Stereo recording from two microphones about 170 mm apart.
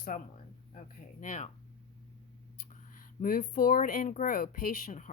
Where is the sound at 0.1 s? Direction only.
50° left (ahead or behind).